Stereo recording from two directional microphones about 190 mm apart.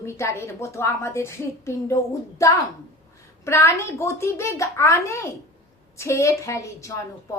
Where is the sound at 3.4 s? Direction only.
15° left (ahead or behind).